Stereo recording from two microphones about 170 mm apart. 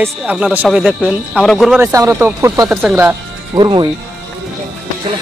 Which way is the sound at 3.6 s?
25° right (ahead or behind).